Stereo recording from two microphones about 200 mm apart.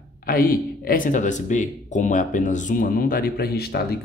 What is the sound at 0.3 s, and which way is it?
Speech, 45° left (ahead or behind).